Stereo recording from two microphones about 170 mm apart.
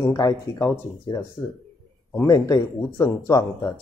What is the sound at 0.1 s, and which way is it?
Speech, 20° left (ahead or behind).